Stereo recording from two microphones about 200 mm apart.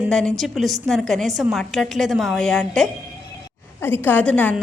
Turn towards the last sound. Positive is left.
turn(degrees=5)  # may be behind; listen again after turning